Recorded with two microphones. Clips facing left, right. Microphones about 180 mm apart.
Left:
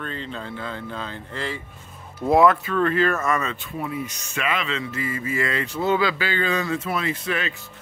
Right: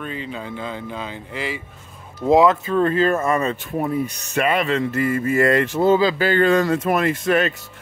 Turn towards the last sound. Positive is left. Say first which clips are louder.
# right 8 dB
turn(degrees=-50)  # may be behind; listen again after turning